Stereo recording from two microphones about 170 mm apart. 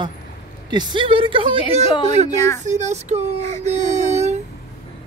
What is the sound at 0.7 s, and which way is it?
A woman's voice, 25° right (ahead or behind).